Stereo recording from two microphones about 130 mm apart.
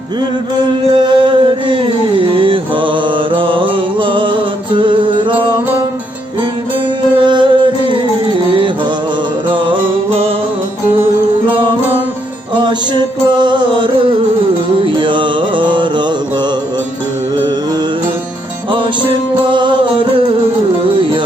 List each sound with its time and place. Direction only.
0.9 s music: 40° right (ahead or behind)
7.2 s music: 40° right (ahead or behind)
12.6 s music: 35° right (ahead or behind)
14.8 s mantra: 40° right (ahead or behind)
19.5 s music: 40° right (ahead or behind)